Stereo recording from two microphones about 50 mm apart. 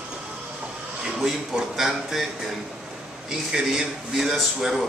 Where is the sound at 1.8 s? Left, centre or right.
Centre.